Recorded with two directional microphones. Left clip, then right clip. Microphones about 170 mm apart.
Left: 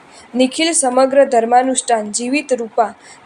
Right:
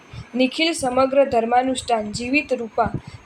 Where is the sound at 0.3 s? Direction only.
25° left (ahead or behind).